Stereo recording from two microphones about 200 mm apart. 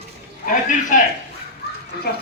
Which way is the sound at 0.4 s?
40° left (ahead or behind).